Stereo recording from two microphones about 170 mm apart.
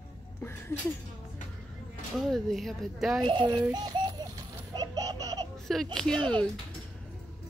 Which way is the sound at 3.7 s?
25° right (ahead or behind).